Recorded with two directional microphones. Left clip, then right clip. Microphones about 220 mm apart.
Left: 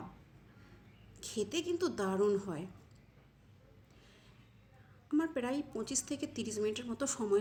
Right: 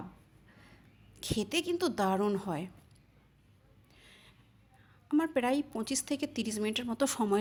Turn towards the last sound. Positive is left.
turn(degrees=-40)  # may be behind; listen again after turning